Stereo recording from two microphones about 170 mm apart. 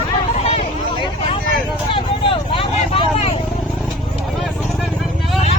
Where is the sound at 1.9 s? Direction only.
30° left (ahead or behind).